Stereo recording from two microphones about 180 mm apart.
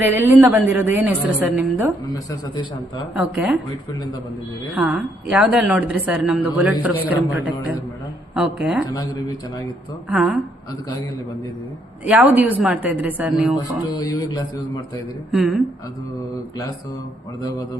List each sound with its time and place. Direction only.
0.0 s a woman's voice: 10° right (ahead or behind)
3.2 s a woman's voice: 5° right (ahead or behind)
4.7 s a woman's voice: 5° right (ahead or behind)
8.9 s speech: 20° left (ahead or behind)
10.1 s speech: 5° right (ahead or behind)
12.0 s a woman's voice: 10° right (ahead or behind)
13.9 s speech: 20° left (ahead or behind)
15.3 s speech: centre (ahead or behind)